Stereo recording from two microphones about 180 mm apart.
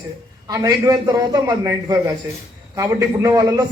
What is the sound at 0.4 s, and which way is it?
A man's voice, 20° right (ahead or behind).